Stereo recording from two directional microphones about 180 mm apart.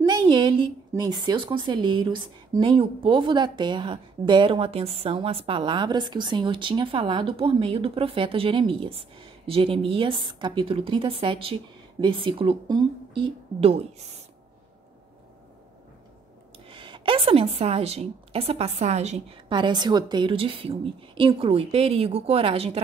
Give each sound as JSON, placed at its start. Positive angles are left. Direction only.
{"t": 0.0, "sound": "a woman's voice", "side_deg": -25}
{"t": 16.6, "sound": "a woman's voice", "side_deg": -25}
{"t": 19.5, "sound": "a woman's voice", "side_deg": -25}